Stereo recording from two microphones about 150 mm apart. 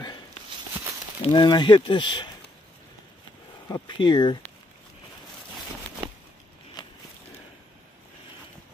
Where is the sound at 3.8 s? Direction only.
30° left (ahead or behind).